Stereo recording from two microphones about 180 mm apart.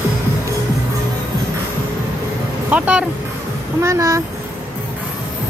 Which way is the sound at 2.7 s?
5° right (ahead or behind).